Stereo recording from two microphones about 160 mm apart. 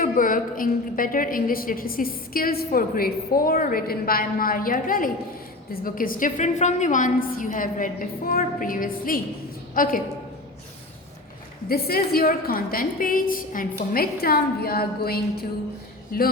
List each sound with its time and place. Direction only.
0.0 s a woman's voice: 60° left (ahead or behind)
11.7 s a woman's voice: 70° left (ahead or behind)